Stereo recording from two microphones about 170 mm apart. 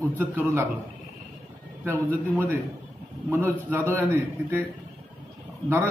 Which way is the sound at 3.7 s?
15° right (ahead or behind).